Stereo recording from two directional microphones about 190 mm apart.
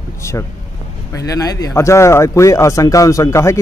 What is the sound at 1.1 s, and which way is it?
Speech, 15° left (ahead or behind).